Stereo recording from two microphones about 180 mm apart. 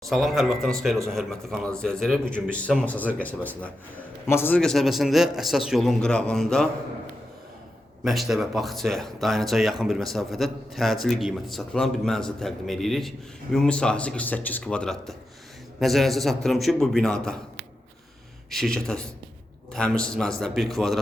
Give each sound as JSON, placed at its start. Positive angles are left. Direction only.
{"t": 0.1, "sound": "a man's voice", "side_deg": 0}
{"t": 8.0, "sound": "a man's voice", "side_deg": 0}
{"t": 18.5, "sound": "a man's voice", "side_deg": 0}